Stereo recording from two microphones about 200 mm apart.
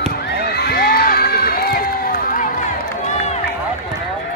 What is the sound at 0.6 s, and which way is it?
Crowd, 45° left (ahead or behind).